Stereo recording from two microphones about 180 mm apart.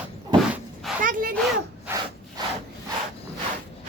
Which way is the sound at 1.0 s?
50° right (ahead or behind).